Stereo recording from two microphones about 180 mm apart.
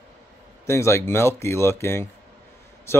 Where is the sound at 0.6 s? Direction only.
15° left (ahead or behind).